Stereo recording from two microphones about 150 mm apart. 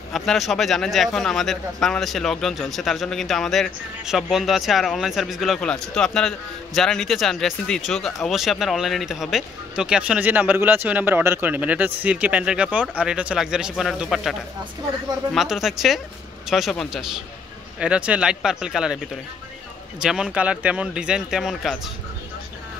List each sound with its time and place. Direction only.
0.1 s speech: centre (ahead or behind)
15.3 s speech: centre (ahead or behind)
20.0 s speech: 5° right (ahead or behind)